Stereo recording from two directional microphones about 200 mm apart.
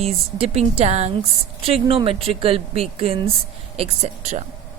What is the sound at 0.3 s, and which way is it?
A woman's voice, 30° right (ahead or behind).